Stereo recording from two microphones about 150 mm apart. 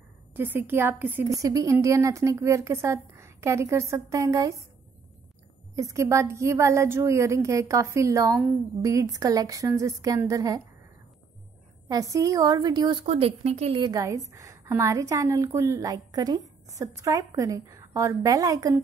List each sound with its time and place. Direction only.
0.3 s a woman's voice: 15° right (ahead or behind)
5.8 s a woman's voice: 20° right (ahead or behind)
11.9 s a woman's voice: 20° right (ahead or behind)
13.0 s speech: 40° right (ahead or behind)
13.7 s a woman's voice: 25° right (ahead or behind)